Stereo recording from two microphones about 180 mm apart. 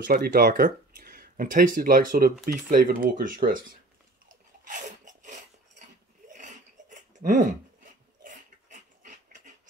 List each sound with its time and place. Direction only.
0.0 s speech: 55° right (ahead or behind)
4.6 s a sound: 45° right (ahead or behind)
8.2 s dog: 45° right (ahead or behind)